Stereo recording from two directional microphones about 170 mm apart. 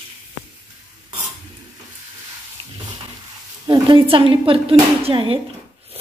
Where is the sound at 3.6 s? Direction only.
25° right (ahead or behind).